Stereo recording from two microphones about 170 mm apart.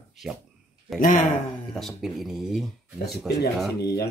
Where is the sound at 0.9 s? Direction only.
50° left (ahead or behind).